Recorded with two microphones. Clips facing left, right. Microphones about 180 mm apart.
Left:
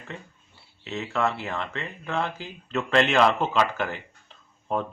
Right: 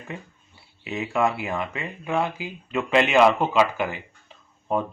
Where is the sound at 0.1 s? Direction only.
10° right (ahead or behind).